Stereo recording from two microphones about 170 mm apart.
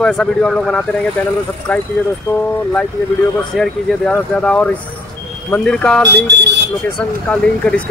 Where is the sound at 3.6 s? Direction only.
Centre (ahead or behind).